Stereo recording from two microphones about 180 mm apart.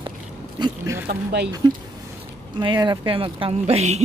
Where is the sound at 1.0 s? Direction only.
65° right (ahead or behind).